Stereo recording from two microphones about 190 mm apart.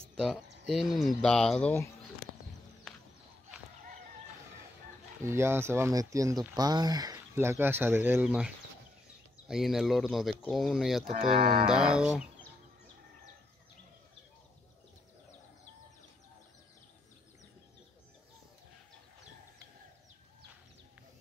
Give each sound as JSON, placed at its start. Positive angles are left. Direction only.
{"t": 0.1, "sound": "a sound", "side_deg": 0}
{"t": 0.7, "sound": "speech", "side_deg": 0}
{"t": 5.2, "sound": "speech", "side_deg": -15}
{"t": 11.1, "sound": "speech", "side_deg": -30}
{"t": 11.7, "sound": "speech", "side_deg": -5}